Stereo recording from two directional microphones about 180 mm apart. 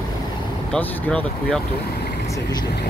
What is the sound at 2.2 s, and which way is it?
Speech, 20° left (ahead or behind).